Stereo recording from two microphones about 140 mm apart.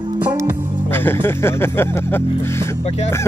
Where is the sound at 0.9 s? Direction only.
15° left (ahead or behind).